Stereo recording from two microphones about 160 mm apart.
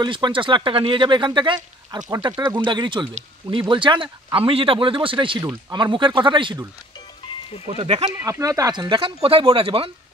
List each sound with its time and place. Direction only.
0.0 s speech: 30° right (ahead or behind)
7.6 s speech: 35° right (ahead or behind)
8.2 s speech: 20° right (ahead or behind)